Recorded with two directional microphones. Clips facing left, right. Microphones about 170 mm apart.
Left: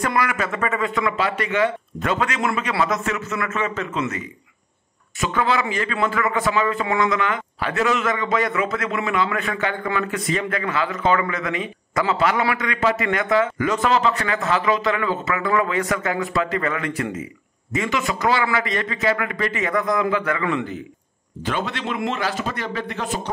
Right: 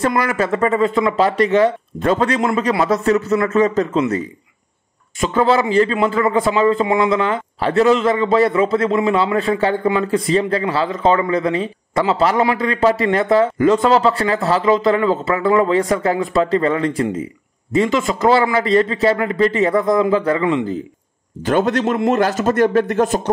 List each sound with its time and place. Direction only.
0.0 s a man's voice: 30° right (ahead or behind)
5.2 s a man's voice: 30° right (ahead or behind)
21.5 s a man's voice: 45° right (ahead or behind)